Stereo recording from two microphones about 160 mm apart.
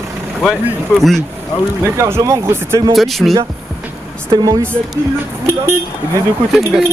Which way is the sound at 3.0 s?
Centre (ahead or behind).